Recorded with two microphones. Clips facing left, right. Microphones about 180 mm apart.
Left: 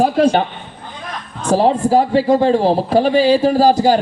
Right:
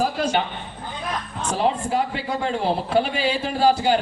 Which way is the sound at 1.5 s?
35° left (ahead or behind).